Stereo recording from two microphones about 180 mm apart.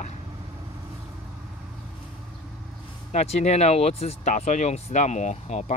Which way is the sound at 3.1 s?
40° left (ahead or behind).